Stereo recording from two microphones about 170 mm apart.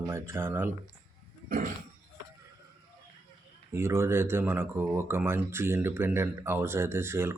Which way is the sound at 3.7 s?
15° right (ahead or behind).